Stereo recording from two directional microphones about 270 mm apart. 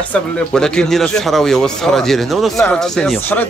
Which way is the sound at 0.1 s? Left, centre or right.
Centre.